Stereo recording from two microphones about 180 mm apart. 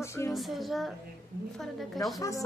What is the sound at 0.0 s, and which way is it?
Music, 15° left (ahead or behind).